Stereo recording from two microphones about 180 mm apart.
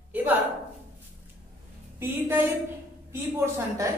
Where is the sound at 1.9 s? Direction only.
10° right (ahead or behind).